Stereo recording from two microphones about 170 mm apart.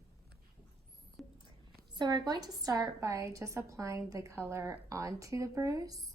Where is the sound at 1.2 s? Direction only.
Centre (ahead or behind).